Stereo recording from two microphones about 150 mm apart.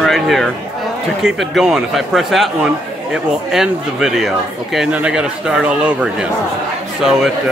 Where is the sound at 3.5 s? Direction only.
5° right (ahead or behind).